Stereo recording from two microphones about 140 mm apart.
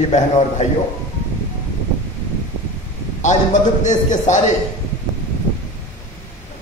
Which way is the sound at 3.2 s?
60° left (ahead or behind).